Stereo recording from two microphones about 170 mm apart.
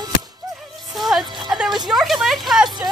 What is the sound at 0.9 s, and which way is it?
Music, centre (ahead or behind).